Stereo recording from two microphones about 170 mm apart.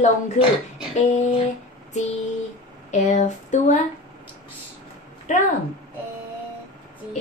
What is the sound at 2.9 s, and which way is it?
Speech, 45° left (ahead or behind).